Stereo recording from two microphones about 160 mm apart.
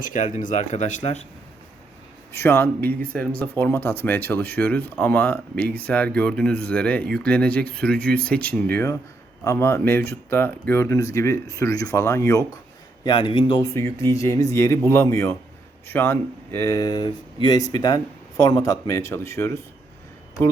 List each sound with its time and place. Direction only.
0.0 s speech: 55° left (ahead or behind)
2.3 s speech: 15° left (ahead or behind)
13.1 s a man's voice: 30° left (ahead or behind)
13.7 s speech: 15° left (ahead or behind)